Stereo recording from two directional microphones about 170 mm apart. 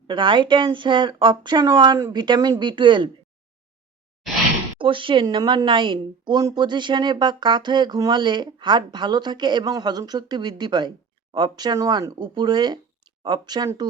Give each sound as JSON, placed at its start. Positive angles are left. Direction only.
{"t": 0.1, "sound": "speech", "side_deg": -30}
{"t": 4.2, "sound": "a sound", "side_deg": 0}
{"t": 4.8, "sound": "speech", "side_deg": -30}